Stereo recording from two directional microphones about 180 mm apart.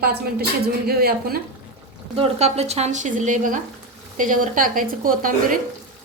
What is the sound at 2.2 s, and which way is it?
A woman's voice, 35° right (ahead or behind).